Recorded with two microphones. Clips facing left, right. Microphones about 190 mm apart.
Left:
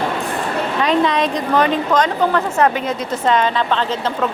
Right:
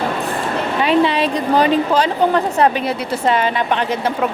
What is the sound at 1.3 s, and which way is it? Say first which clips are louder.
A woman's voice: right 2 dB; 30° right (ahead or behind).